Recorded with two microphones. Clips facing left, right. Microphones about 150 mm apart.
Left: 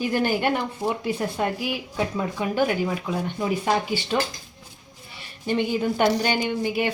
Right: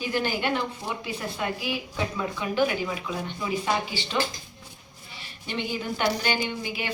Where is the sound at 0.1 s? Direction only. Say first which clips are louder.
Left 2 dB; 50° left (ahead or behind).